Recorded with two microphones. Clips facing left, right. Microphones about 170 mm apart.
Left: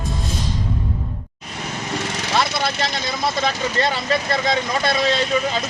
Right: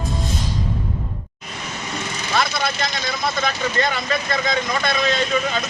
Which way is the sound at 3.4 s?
30° left (ahead or behind).